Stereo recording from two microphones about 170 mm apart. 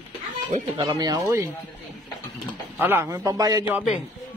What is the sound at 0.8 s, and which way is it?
Speech, 25° right (ahead or behind).